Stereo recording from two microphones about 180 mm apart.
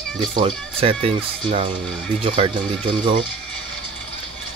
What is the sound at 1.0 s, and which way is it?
Speech, 30° right (ahead or behind).